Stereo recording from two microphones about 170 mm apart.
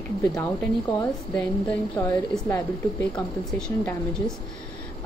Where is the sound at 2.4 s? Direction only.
10° left (ahead or behind).